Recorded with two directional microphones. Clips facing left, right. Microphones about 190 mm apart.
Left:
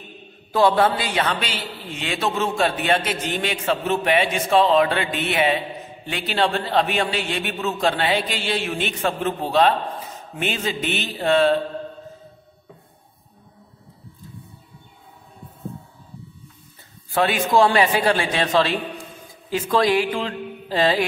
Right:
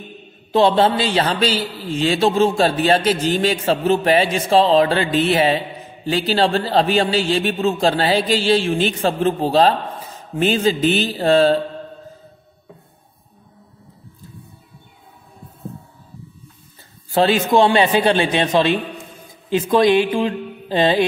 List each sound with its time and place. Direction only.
0.5 s a man's voice: 25° right (ahead or behind)
17.1 s a man's voice: 30° right (ahead or behind)